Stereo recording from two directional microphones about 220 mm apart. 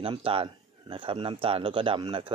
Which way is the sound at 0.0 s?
25° right (ahead or behind).